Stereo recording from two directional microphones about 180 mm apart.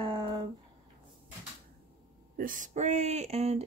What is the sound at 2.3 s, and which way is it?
A woman's voice, 50° right (ahead or behind).